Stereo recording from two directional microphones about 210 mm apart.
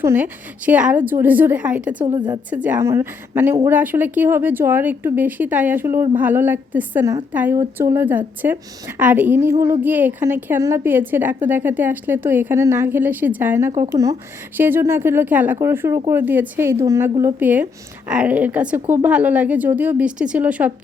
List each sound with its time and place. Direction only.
0.0 s a woman's voice: 10° right (ahead or behind)
2.1 s a woman's voice: 20° right (ahead or behind)
2.5 s a woman's voice: 5° right (ahead or behind)